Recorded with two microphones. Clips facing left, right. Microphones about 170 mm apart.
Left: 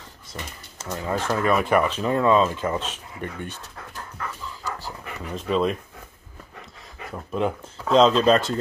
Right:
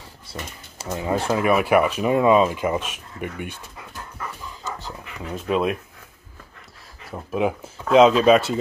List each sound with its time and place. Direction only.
0.8 s speech: 15° right (ahead or behind)
4.6 s dog: 20° right (ahead or behind)
5.3 s speech: 10° right (ahead or behind)
7.1 s speech: 10° right (ahead or behind)